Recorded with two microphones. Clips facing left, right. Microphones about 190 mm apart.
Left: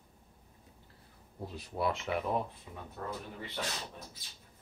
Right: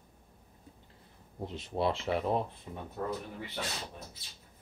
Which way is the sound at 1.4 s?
20° right (ahead or behind).